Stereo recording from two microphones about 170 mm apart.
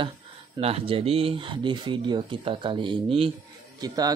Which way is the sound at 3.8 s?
20° right (ahead or behind).